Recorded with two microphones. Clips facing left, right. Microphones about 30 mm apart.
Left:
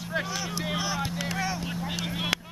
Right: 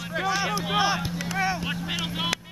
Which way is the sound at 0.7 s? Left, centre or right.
Right.